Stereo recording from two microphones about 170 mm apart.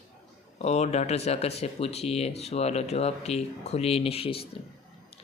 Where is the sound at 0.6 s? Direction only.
40° left (ahead or behind).